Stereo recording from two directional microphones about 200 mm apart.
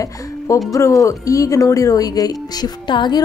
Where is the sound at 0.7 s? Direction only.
15° left (ahead or behind).